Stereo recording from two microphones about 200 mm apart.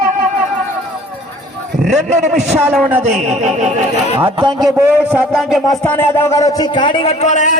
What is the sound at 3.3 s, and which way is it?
Speech, 35° right (ahead or behind).